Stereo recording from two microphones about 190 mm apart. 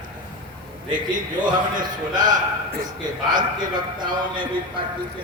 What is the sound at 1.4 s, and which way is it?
Speech, 25° right (ahead or behind).